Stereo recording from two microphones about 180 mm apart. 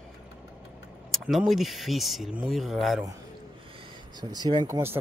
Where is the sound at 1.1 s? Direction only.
5° right (ahead or behind).